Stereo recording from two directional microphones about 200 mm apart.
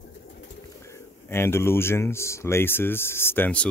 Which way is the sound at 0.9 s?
10° left (ahead or behind).